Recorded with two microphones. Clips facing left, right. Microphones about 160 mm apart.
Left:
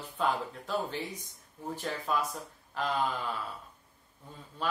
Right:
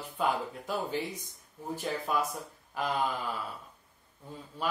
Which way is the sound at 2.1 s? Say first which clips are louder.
Even; 10° right (ahead or behind).